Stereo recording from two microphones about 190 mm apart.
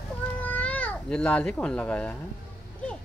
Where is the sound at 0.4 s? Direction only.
10° left (ahead or behind).